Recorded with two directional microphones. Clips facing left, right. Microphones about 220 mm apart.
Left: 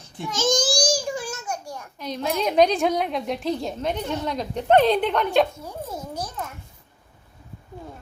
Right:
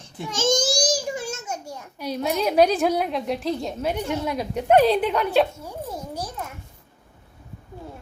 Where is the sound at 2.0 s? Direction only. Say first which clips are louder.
Right 1 dB; 5° right (ahead or behind).